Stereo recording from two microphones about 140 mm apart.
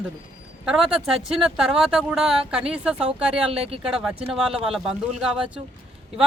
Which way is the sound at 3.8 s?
5° right (ahead or behind).